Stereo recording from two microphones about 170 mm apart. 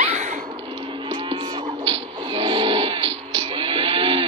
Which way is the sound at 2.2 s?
30° right (ahead or behind).